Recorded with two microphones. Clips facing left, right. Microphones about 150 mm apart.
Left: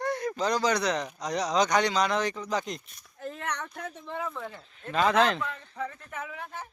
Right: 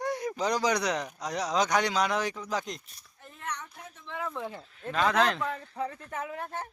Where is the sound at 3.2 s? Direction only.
75° left (ahead or behind).